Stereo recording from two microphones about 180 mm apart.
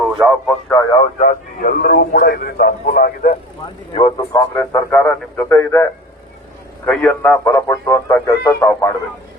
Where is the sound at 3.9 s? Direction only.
30° left (ahead or behind).